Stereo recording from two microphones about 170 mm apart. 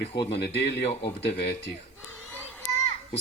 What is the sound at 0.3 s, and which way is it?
A man's voice, 85° left.